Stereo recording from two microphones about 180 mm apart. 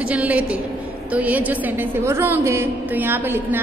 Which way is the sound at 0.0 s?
10° right (ahead or behind).